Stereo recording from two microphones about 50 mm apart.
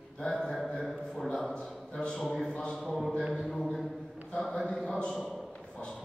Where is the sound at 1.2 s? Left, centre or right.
Centre.